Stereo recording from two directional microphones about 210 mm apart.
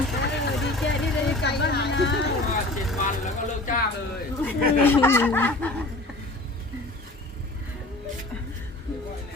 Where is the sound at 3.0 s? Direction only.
40° left (ahead or behind).